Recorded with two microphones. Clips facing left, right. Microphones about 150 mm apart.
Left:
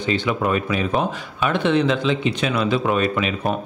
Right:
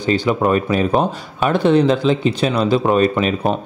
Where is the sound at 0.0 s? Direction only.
40° right (ahead or behind).